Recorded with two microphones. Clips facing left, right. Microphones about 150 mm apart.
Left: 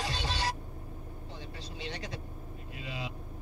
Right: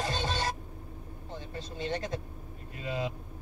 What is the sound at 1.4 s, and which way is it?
Vehicle, 50° right (ahead or behind).